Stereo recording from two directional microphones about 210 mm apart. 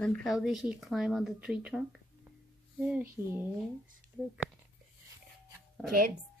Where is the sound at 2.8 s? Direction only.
10° right (ahead or behind).